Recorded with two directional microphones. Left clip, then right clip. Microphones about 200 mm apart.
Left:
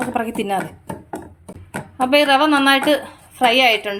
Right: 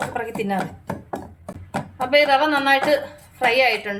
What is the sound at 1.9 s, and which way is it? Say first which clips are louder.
A woman's voice: left 2 dB; 40° left (ahead or behind).